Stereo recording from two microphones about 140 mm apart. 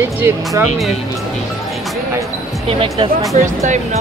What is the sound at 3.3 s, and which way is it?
Speech, 60° right (ahead or behind).